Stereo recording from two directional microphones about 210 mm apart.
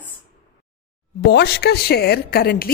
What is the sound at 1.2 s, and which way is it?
A woman's voice, 50° left (ahead or behind).